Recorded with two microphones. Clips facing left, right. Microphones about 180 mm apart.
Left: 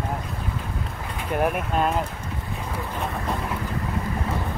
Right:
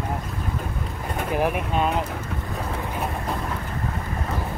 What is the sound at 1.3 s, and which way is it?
Speech, centre (ahead or behind).